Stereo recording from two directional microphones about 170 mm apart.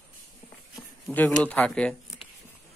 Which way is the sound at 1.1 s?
10° left (ahead or behind).